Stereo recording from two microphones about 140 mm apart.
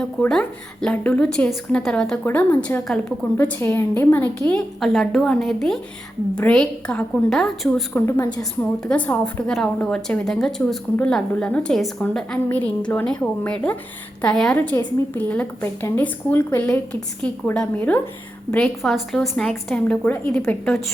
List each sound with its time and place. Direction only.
0.0 s a woman's voice: 5° left (ahead or behind)
3.3 s a woman's voice: 15° left (ahead or behind)
4.5 s a woman's voice: centre (ahead or behind)
7.9 s a woman's voice: 15° left (ahead or behind)